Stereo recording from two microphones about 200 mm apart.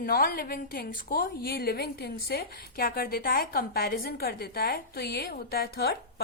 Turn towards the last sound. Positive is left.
turn(degrees=50)  # may be behind; listen again after turning